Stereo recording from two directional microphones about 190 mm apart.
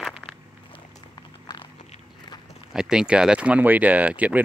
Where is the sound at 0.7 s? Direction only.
25° left (ahead or behind).